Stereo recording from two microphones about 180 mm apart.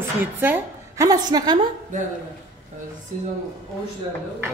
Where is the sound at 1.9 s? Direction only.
45° right (ahead or behind).